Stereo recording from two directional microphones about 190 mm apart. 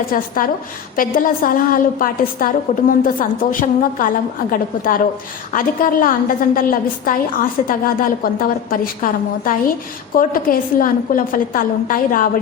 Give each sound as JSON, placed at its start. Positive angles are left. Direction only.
{"t": 0.1, "sound": "a woman's voice", "side_deg": 45}